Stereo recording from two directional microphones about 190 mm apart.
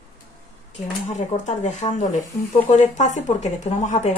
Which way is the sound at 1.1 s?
40° left (ahead or behind).